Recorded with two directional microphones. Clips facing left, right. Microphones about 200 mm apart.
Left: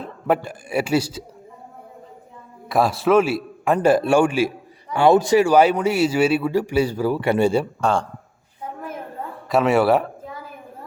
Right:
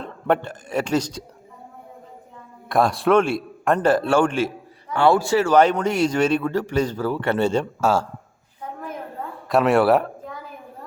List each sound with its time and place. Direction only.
0.0 s a man's voice: 5° left (ahead or behind)
2.6 s a man's voice: centre (ahead or behind)
7.8 s a man's voice: 5° right (ahead or behind)
9.5 s a man's voice: centre (ahead or behind)